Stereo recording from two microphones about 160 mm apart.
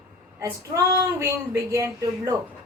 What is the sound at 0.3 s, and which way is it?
Female singing, 20° right (ahead or behind).